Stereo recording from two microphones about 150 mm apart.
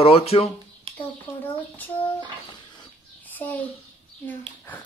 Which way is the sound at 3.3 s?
10° left (ahead or behind).